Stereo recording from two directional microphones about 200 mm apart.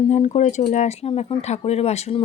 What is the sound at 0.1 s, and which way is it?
Speech, 35° left (ahead or behind).